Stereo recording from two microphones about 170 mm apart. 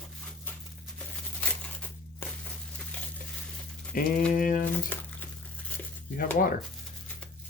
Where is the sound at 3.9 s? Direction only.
55° left (ahead or behind).